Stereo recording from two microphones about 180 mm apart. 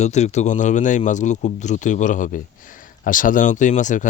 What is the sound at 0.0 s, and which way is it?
Speech, 40° left (ahead or behind).